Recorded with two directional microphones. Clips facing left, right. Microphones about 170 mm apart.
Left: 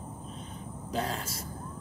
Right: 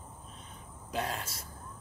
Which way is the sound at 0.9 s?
30° left (ahead or behind).